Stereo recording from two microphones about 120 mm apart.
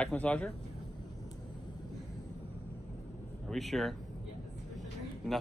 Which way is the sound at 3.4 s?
Centre (ahead or behind).